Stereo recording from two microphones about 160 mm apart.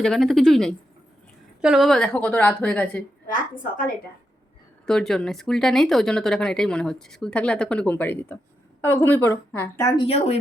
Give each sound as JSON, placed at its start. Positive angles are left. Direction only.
{"t": 0.0, "sound": "a woman's voice", "side_deg": 0}
{"t": 4.9, "sound": "a woman's voice", "side_deg": 5}
{"t": 9.9, "sound": "a woman's voice", "side_deg": 35}